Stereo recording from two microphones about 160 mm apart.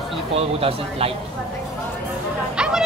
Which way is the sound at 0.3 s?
40° right (ahead or behind).